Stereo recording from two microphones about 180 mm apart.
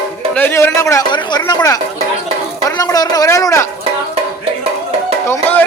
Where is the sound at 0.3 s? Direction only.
10° left (ahead or behind).